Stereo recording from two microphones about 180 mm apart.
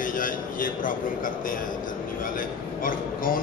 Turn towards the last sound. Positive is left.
turn(degrees=50)  # may be behind; listen again after turning